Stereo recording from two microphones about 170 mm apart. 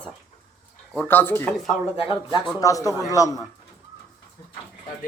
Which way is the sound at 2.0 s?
30° left (ahead or behind).